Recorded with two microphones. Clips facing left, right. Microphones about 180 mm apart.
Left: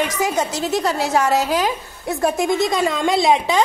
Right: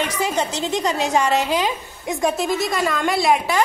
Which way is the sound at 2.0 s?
10° right (ahead or behind).